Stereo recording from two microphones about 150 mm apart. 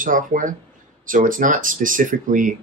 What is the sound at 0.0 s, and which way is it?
Speech, 60° right (ahead or behind).